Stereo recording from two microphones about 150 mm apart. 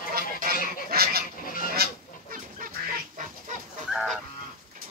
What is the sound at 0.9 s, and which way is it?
Goose, 90° right.